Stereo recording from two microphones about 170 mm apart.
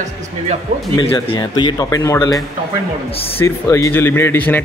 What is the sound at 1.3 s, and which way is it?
Speech, 25° left (ahead or behind).